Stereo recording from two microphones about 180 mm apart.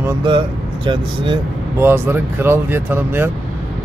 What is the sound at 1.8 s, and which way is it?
A man's voice, 10° right (ahead or behind).